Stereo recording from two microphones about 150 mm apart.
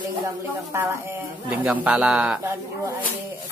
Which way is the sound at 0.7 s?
15° right (ahead or behind).